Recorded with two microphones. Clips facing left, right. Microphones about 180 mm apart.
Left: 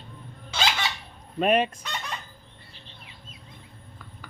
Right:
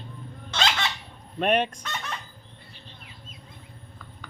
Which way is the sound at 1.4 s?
Centre (ahead or behind).